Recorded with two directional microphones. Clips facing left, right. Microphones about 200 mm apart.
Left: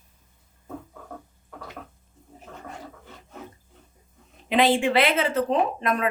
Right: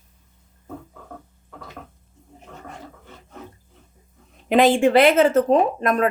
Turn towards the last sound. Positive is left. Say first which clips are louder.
# right 5 dB
turn(degrees=-45)  # may be behind; listen again after turning